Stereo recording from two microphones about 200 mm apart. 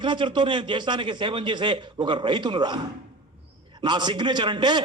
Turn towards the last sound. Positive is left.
turn(degrees=-20)  # may be behind; listen again after turning